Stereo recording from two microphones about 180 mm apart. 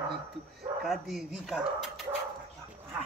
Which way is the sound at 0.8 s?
Centre (ahead or behind).